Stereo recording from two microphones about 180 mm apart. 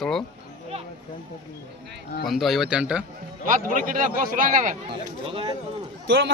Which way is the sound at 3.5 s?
50° right (ahead or behind).